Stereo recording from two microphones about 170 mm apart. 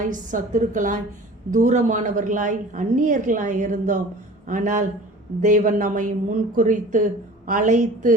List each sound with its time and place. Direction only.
0.0 s a woman's voice: 50° right (ahead or behind)